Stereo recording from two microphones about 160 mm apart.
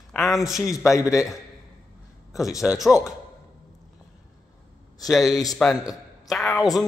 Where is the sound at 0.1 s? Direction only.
Centre (ahead or behind).